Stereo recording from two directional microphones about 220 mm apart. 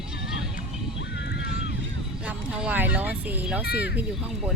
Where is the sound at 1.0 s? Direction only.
50° left (ahead or behind).